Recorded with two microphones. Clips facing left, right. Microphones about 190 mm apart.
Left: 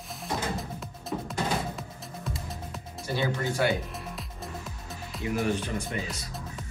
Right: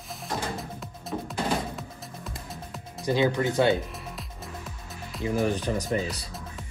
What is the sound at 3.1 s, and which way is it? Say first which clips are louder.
Speech: right 6 dB; 20° right (ahead or behind).